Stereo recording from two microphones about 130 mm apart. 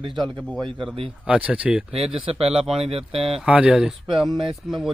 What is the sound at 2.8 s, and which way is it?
Speech, 50° right (ahead or behind).